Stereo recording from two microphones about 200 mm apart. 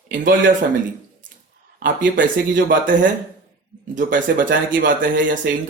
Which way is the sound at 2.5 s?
40° right (ahead or behind).